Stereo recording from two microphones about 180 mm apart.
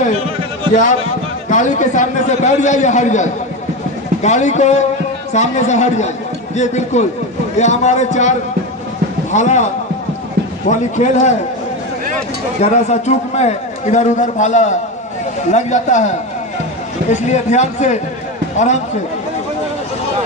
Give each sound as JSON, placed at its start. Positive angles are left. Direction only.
{"t": 1.5, "sound": "a man's voice", "side_deg": 45}
{"t": 10.7, "sound": "a man's voice", "side_deg": 40}
{"t": 12.5, "sound": "a man's voice", "side_deg": 40}
{"t": 17.1, "sound": "a man's voice", "side_deg": 40}